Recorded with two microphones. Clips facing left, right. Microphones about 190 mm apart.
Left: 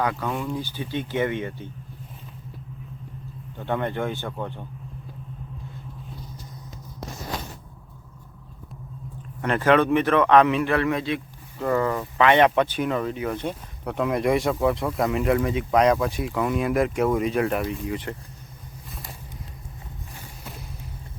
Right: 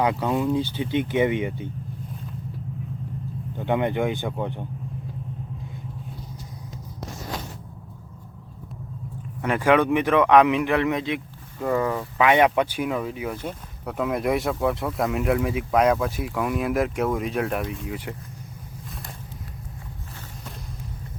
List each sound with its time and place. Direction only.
0.0 s speech: 20° right (ahead or behind)
3.6 s a man's voice: 15° right (ahead or behind)
9.4 s a man's voice: 10° right (ahead or behind)